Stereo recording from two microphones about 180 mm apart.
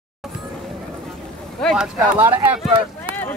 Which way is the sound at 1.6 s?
5° left (ahead or behind).